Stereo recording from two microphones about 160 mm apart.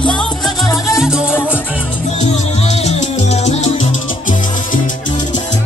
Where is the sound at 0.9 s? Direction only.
5° right (ahead or behind).